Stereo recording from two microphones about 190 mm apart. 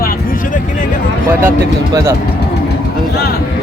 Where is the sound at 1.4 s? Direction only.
15° right (ahead or behind).